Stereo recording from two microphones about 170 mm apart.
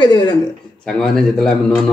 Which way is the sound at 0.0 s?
25° left (ahead or behind).